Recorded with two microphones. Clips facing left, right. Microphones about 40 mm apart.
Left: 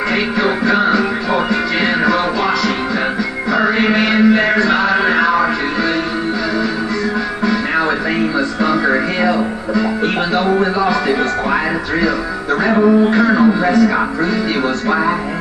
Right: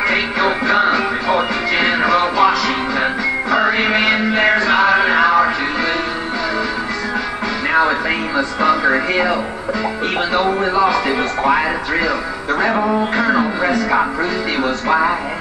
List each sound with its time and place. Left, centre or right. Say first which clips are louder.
0.4 s music: left 1 dB; centre
3.5 s music: left 2 dB; centre
4.6 s a sound: right 1 dB; centre
8.4 s music: even; centre
10.3 s speech: even; centre
13.2 s speech: left 3 dB; centre